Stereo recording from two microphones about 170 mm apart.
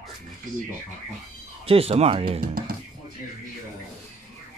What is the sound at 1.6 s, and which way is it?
Speech, 35° right (ahead or behind).